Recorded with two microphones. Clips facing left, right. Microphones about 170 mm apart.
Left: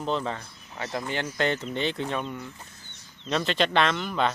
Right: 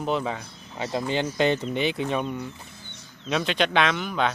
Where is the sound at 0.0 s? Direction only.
10° right (ahead or behind).